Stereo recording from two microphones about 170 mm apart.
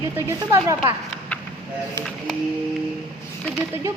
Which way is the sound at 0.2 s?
15° right (ahead or behind).